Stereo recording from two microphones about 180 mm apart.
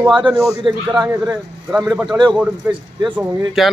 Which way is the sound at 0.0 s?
25° right (ahead or behind).